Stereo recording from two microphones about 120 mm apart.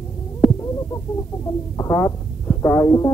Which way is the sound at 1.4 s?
30° left (ahead or behind).